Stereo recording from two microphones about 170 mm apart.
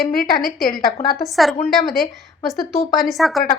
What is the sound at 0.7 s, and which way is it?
Speech, 60° left (ahead or behind).